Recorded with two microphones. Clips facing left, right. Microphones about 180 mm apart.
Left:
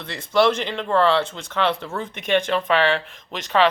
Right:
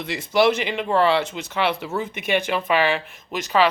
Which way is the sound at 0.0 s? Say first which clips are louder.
Even; 10° right (ahead or behind).